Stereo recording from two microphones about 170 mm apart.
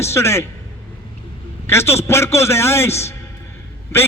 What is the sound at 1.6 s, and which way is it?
A man's voice, 15° left (ahead or behind).